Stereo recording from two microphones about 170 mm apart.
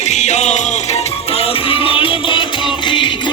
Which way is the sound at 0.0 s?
45° left (ahead or behind).